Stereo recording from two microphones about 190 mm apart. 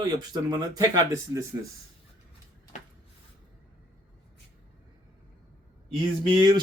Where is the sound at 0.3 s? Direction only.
20° right (ahead or behind).